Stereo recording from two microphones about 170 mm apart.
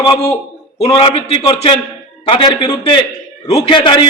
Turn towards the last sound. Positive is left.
turn(degrees=30)  # may be behind; listen again after turning